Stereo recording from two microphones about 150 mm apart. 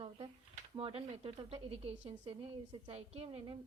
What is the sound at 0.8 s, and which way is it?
A woman's voice, 40° right (ahead or behind).